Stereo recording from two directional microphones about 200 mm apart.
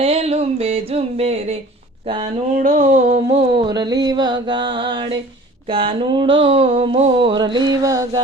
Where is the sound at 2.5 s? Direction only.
40° right (ahead or behind).